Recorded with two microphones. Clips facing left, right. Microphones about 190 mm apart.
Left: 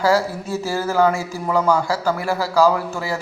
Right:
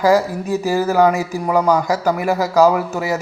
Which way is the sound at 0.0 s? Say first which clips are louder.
Right 3 dB; 15° right (ahead or behind).